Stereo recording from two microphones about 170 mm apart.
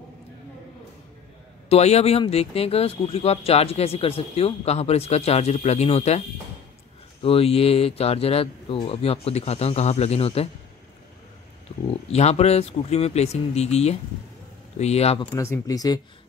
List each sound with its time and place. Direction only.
1.7 s speech: 40° left (ahead or behind)
11.7 s a sound: 35° left (ahead or behind)
12.1 s speech: 40° left (ahead or behind)
15.3 s speech: 15° left (ahead or behind)